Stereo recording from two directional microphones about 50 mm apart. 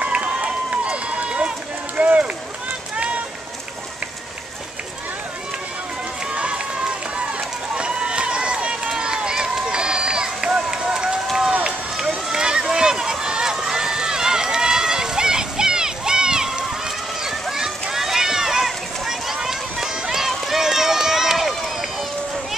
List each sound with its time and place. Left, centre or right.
0.0 s run: right
6.3 s run: right
12.3 s run: centre
17.2 s a sound: centre